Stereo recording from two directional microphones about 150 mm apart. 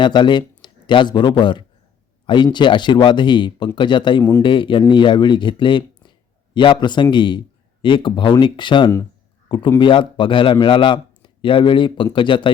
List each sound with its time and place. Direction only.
0.0 s a man's voice: 30° left (ahead or behind)
4.2 s speech: 20° left (ahead or behind)
4.4 s a man's voice: 35° left (ahead or behind)